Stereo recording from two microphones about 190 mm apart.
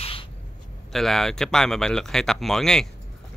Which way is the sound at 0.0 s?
30° left (ahead or behind).